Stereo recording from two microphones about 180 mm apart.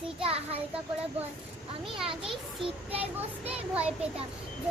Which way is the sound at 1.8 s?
30° right (ahead or behind).